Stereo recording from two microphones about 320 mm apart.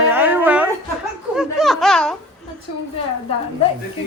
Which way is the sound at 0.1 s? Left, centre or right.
Centre.